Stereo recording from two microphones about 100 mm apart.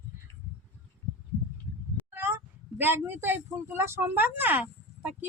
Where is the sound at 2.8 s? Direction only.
20° right (ahead or behind).